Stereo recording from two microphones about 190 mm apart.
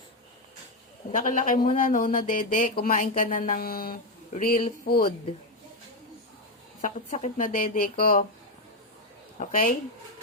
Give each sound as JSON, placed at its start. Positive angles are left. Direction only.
{"t": 1.1, "sound": "speech", "side_deg": 40}
{"t": 6.8, "sound": "speech", "side_deg": 40}
{"t": 9.4, "sound": "speech", "side_deg": 45}